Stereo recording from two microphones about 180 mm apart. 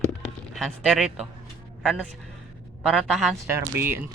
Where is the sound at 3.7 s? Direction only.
10° right (ahead or behind).